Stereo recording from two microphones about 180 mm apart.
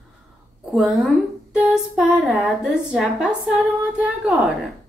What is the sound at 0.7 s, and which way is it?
A woman's voice, 5° right (ahead or behind).